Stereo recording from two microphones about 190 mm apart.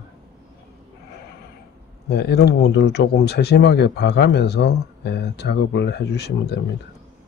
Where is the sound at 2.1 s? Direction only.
55° left (ahead or behind).